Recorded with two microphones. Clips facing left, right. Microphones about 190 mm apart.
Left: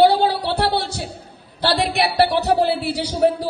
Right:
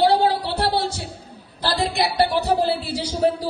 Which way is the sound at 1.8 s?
70° left (ahead or behind).